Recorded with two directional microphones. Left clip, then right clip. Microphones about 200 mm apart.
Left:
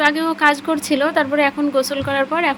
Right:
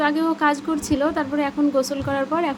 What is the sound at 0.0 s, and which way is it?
Speech, 15° left (ahead or behind).